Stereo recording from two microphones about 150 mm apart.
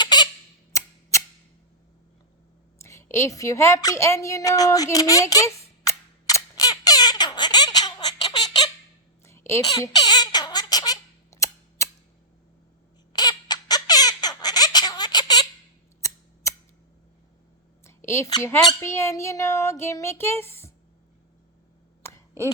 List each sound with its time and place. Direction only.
0.0 s squawk: 30° left (ahead or behind)
0.7 s scissors: 20° left (ahead or behind)
2.8 s a sound: 20° left (ahead or behind)
13.1 s squawk: 25° left (ahead or behind)
16.0 s scissors: 20° left (ahead or behind)
17.8 s speech: 20° left (ahead or behind)
22.0 s a sound: 15° left (ahead or behind)